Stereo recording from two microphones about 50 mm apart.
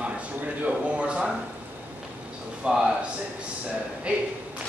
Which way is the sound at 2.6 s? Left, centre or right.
Centre.